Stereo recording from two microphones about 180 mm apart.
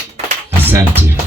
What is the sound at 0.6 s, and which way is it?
Music, 10° right (ahead or behind).